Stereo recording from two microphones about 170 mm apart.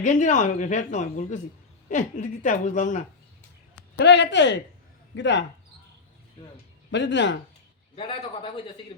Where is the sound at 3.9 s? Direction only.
90° left.